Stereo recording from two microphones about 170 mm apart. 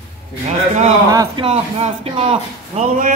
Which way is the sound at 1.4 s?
35° right (ahead or behind).